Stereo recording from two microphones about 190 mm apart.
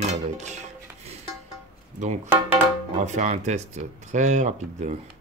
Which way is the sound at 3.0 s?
40° right (ahead or behind).